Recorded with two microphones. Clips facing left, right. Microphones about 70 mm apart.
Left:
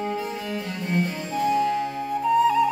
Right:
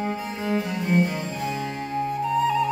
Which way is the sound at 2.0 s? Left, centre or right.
Centre.